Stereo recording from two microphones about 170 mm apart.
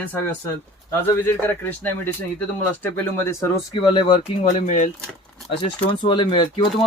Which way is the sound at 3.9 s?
25° left (ahead or behind).